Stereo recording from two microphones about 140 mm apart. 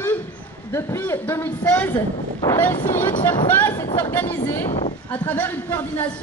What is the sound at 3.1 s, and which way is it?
Speech, 35° left (ahead or behind).